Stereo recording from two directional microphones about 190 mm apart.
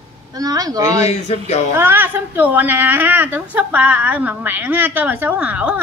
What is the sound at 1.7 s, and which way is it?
A woman's voice, 10° right (ahead or behind).